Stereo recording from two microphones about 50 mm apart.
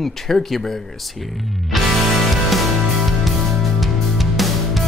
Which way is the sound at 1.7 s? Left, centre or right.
Centre.